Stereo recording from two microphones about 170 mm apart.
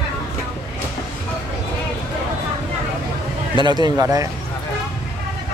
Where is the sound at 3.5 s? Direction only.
25° right (ahead or behind).